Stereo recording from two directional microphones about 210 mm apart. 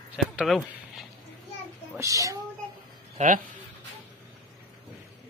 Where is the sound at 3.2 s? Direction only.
35° right (ahead or behind).